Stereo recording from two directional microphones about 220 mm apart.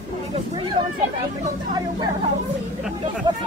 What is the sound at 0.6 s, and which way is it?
Speech, 20° right (ahead or behind).